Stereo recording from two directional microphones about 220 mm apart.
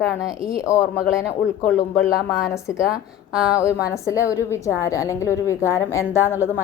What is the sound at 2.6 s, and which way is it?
Speech, 15° left (ahead or behind).